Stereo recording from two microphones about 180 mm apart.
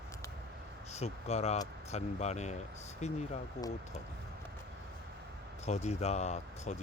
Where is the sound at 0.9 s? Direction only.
35° left (ahead or behind).